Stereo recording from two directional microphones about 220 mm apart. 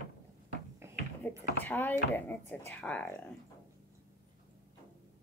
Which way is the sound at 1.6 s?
10° left (ahead or behind).